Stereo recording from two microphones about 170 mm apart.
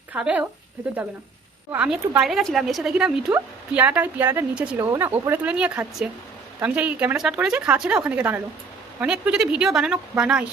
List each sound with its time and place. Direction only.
0.1 s speech: 10° right (ahead or behind)
1.7 s a woman's voice: 5° right (ahead or behind)